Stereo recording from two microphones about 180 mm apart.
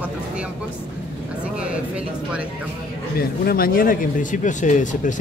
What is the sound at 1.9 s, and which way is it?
Speech, 5° right (ahead or behind).